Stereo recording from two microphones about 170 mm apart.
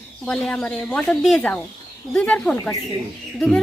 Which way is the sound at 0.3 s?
5° left (ahead or behind).